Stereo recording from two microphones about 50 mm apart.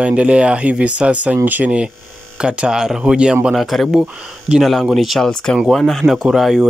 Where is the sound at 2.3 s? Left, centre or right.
Centre.